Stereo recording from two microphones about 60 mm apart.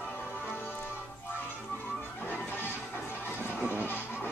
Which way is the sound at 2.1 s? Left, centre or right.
Left.